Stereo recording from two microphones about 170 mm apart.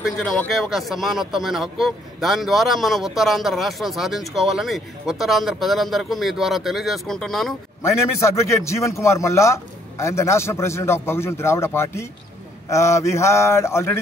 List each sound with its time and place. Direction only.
0.0 s a man's voice: 5° left (ahead or behind)
7.8 s a man's voice: 15° left (ahead or behind)